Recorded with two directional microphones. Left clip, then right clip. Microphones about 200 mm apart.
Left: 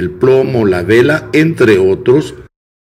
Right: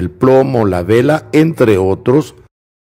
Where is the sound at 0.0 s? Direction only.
55° right (ahead or behind).